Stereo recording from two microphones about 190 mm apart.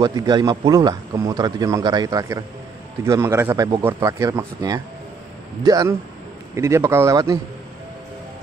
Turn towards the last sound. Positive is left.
turn(degrees=-15)  # may be behind; listen again after turning